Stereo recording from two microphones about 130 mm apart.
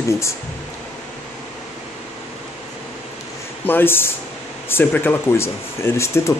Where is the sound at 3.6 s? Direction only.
15° left (ahead or behind).